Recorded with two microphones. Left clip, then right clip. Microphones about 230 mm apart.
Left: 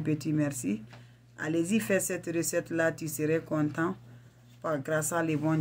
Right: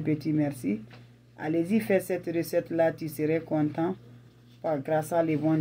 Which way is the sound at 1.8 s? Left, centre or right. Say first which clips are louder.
Right 4 dB; left.